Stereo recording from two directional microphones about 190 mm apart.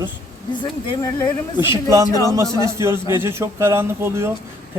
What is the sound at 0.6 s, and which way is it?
Speech, 20° left (ahead or behind).